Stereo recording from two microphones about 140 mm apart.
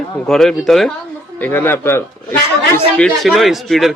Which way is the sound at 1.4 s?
15° left (ahead or behind).